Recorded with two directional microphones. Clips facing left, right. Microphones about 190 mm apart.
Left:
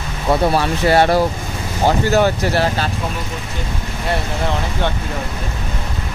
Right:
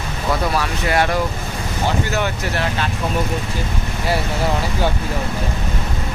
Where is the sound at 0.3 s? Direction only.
30° left (ahead or behind).